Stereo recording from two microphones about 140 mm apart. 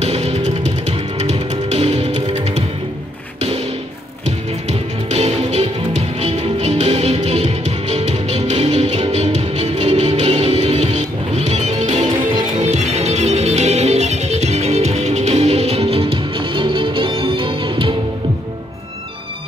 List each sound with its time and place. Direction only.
0.0 s music: 50° right (ahead or behind)
4.6 s music: 50° right (ahead or behind); by 17.9 s 35° right (ahead or behind)